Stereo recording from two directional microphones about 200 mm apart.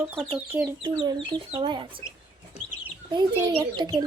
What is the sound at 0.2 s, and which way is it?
Speech, 5° right (ahead or behind).